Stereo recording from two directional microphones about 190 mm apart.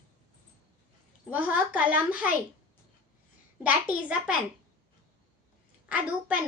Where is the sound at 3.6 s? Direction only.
5° right (ahead or behind).